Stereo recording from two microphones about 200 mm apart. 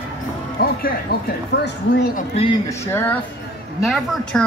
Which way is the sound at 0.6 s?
50° left (ahead or behind).